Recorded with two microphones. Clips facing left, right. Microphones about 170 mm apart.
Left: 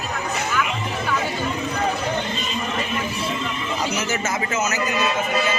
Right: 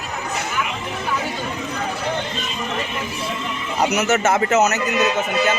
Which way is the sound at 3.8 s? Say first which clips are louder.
Right 9 dB; 70° right (ahead or behind).